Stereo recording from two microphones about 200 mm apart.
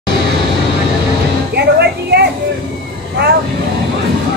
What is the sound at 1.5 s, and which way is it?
Music, 55° right (ahead or behind).